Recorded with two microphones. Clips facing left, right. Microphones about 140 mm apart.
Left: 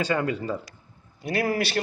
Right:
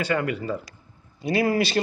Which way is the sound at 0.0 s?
20° left (ahead or behind).